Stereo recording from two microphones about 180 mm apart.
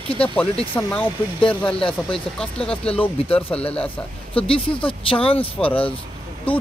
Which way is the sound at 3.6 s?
35° left (ahead or behind).